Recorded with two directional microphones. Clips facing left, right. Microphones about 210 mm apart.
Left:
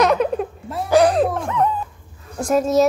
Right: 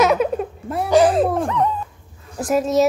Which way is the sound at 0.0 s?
5° right (ahead or behind).